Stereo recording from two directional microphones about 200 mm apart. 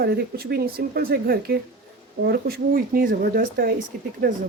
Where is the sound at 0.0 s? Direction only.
50° right (ahead or behind).